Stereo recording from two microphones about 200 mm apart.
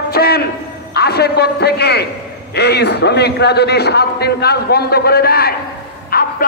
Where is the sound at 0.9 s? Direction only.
55° left (ahead or behind).